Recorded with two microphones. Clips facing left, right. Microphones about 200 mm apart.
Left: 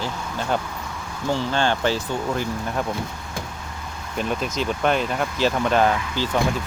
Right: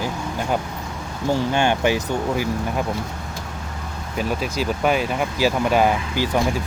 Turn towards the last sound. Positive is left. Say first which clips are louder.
# right 2 dB
turn(degrees=-10)  # may be behind; listen again after turning